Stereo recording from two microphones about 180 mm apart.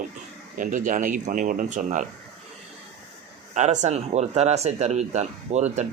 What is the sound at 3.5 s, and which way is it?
Speech, 40° right (ahead or behind).